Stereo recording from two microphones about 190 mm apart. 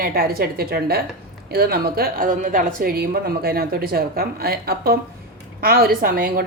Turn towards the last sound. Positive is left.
turn(degrees=-50)  # may be behind; listen again after turning